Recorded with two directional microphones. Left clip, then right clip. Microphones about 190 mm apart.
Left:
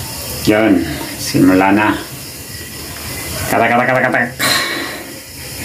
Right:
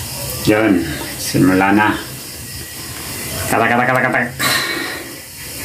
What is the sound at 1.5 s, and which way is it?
Speech, centre (ahead or behind).